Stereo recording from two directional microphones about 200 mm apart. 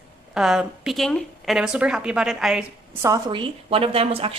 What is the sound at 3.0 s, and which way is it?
A woman's voice, 20° right (ahead or behind).